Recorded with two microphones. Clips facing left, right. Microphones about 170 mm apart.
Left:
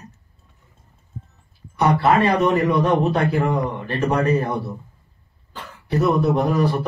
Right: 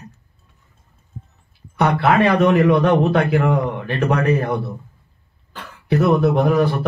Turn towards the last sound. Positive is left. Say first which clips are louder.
# right 3 dB
turn(degrees=-65)  # may be behind; listen again after turning